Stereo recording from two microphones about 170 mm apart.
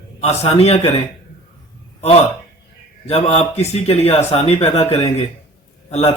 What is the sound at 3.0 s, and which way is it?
Speech, 35° left (ahead or behind).